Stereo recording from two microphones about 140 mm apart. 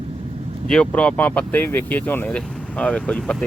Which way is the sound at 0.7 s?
5° left (ahead or behind).